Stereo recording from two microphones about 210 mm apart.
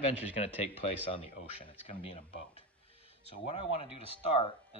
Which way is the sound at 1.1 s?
25° left (ahead or behind).